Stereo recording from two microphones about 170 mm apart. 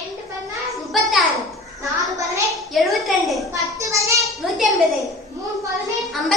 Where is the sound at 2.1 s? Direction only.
20° right (ahead or behind).